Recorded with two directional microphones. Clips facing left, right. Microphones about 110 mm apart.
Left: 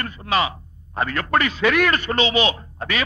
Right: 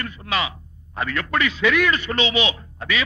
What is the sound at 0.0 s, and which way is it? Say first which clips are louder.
A man's voice: left 4 dB; 40° left (ahead or behind).